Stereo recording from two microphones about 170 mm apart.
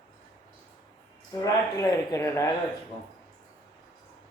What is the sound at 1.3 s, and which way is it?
Speech, 20° left (ahead or behind).